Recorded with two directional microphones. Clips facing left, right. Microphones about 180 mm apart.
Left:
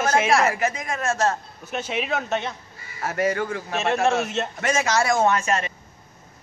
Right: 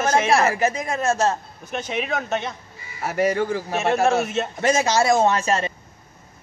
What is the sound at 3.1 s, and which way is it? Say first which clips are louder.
Speech: right 3 dB; 25° right (ahead or behind).